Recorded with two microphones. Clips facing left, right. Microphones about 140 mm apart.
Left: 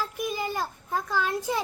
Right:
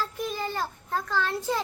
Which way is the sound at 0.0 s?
10° left (ahead or behind).